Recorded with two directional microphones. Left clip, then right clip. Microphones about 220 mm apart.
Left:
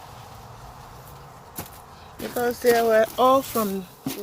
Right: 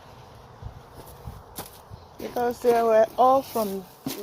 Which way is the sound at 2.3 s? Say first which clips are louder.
Left 2 dB; 5° left (ahead or behind).